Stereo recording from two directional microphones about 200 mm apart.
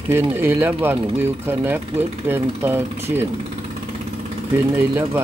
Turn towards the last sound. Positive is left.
turn(degrees=-10)  # may be behind; listen again after turning